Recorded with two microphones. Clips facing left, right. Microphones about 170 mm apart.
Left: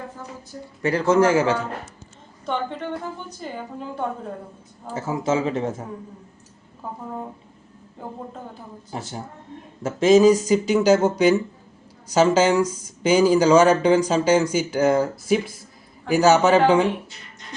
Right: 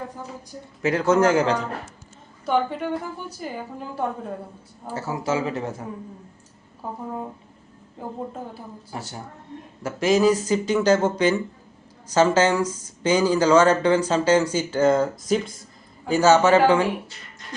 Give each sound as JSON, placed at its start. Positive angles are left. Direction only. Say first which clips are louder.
{"t": 0.8, "sound": "a man's voice", "louder": "left 1 dB", "side_deg": 0}
{"t": 2.5, "sound": "a woman's voice", "louder": "right 4 dB", "side_deg": -10}
{"t": 4.9, "sound": "speech", "louder": "left 2 dB", "side_deg": 20}
{"t": 8.9, "sound": "speech", "louder": "left 4 dB", "side_deg": 20}
{"t": 14.8, "sound": "speech", "louder": "even", "side_deg": 5}